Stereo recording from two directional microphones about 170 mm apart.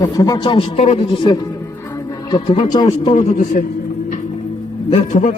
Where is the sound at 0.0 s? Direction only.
25° left (ahead or behind).